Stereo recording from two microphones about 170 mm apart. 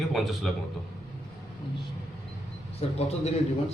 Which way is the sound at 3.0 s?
40° left (ahead or behind).